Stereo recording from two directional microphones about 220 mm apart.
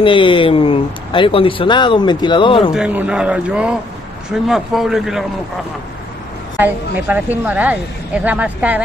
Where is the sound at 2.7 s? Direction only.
5° right (ahead or behind).